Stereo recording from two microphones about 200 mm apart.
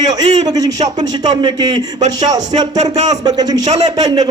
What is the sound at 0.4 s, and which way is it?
Speech, 20° right (ahead or behind).